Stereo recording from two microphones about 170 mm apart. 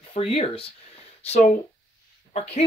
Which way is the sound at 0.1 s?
35° left (ahead or behind).